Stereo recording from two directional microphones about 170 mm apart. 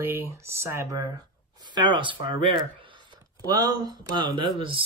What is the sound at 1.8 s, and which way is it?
Speech, 30° right (ahead or behind).